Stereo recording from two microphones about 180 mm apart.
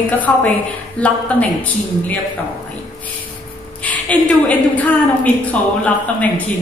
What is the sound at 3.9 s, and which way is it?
A woman's voice, 10° left (ahead or behind).